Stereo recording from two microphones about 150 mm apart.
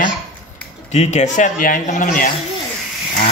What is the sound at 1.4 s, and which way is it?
Speech, 60° left (ahead or behind).